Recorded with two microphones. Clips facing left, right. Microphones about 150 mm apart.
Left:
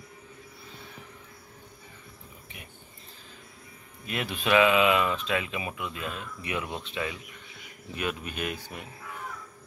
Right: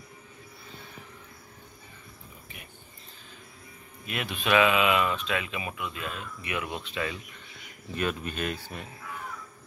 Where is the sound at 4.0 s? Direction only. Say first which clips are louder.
Left 1 dB; 30° left (ahead or behind).